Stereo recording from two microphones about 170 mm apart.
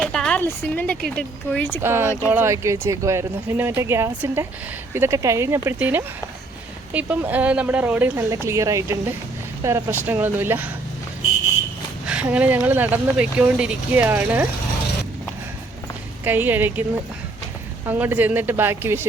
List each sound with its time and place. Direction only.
0.0 s speech: 5° left (ahead or behind)
1.8 s speech: 15° right (ahead or behind)
12.0 s speech: 5° right (ahead or behind)
16.2 s speech: 10° right (ahead or behind)
17.8 s speech: 10° right (ahead or behind)